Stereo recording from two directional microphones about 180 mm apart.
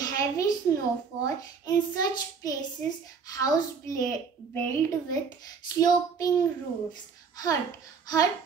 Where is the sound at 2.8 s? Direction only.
10° left (ahead or behind).